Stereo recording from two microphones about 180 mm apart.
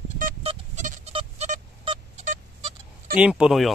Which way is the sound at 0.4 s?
40° right (ahead or behind).